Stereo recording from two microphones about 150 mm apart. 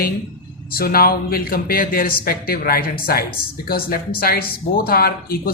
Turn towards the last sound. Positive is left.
turn(degrees=90)